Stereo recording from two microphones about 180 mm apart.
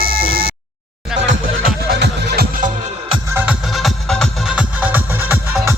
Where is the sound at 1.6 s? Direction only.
65° right (ahead or behind).